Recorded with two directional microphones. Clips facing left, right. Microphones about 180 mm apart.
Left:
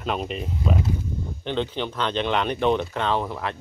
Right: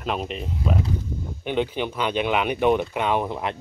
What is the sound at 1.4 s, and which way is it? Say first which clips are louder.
Speech: right 2 dB; 10° right (ahead or behind).